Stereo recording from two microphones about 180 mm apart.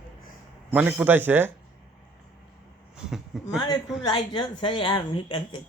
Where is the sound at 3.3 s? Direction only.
5° right (ahead or behind).